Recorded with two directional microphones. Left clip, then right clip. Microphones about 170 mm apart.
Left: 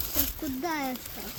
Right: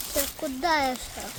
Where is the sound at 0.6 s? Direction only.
45° right (ahead or behind).